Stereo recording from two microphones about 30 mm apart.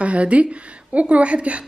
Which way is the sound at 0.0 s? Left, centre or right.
Right.